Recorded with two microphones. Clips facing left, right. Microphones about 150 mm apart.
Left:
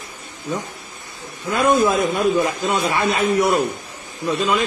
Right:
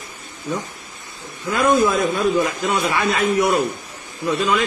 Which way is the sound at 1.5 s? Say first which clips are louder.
Even; 15° left (ahead or behind).